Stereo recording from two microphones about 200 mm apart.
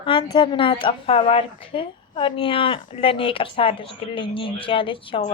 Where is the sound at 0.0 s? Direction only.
25° left (ahead or behind).